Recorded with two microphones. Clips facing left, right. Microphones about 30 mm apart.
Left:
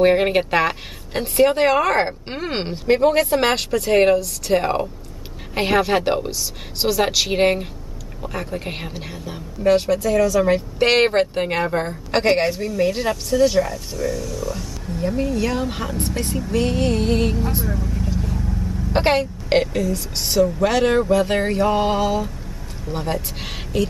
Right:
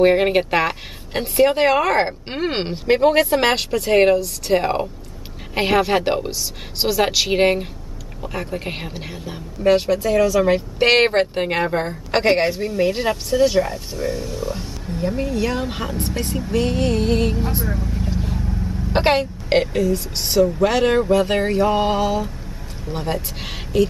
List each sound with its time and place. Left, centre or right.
0.0 s speech: centre
5.5 s a sound: centre
8.2 s speech: centre
13.7 s speech: right
15.0 s speech: centre
16.5 s a sound: centre
17.6 s speech: centre
18.1 s vehicle: right
18.7 s a woman's voice: centre
20.6 s a sound: centre